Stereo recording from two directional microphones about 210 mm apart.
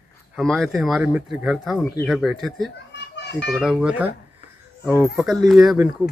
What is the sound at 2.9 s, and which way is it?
Children playing, 55° left (ahead or behind).